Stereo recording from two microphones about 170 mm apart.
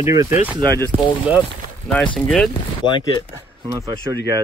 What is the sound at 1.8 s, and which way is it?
Speech, 10° left (ahead or behind).